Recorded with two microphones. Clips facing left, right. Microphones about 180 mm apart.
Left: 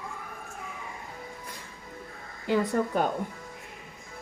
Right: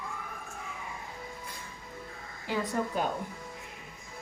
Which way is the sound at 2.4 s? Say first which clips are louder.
Left 6 dB; 55° left (ahead or behind).